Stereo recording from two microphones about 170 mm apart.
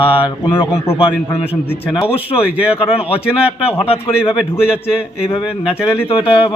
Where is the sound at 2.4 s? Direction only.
5° right (ahead or behind).